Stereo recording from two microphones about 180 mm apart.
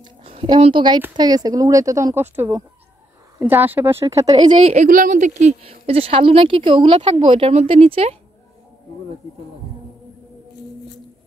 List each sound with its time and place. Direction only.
0.0 s speech: 30° right (ahead or behind)
4.7 s speech: 50° right (ahead or behind)